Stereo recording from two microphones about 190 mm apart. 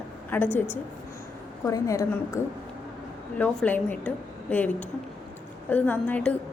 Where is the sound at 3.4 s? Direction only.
10° left (ahead or behind).